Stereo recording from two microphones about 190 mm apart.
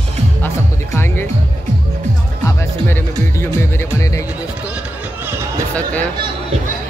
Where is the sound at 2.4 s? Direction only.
10° left (ahead or behind).